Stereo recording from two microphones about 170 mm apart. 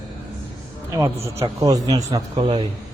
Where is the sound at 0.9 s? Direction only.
15° right (ahead or behind).